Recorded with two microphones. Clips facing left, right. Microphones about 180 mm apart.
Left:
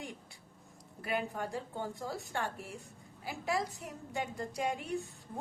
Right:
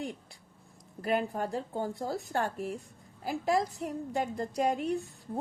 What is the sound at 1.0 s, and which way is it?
A woman's voice, 40° right (ahead or behind).